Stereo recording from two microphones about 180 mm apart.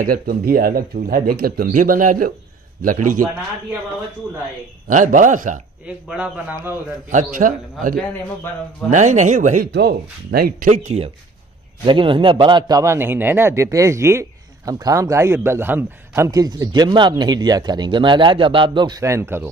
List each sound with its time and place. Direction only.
0.0 s speech: 55° right (ahead or behind)
4.8 s speech: 45° right (ahead or behind)
5.9 s a man's voice: 5° right (ahead or behind)
7.1 s speech: 45° right (ahead or behind)
8.9 s speech: 40° right (ahead or behind)
9.7 s speech: 65° right (ahead or behind); by 11.1 s 40° right (ahead or behind)
11.8 s a man's voice: 25° right (ahead or behind)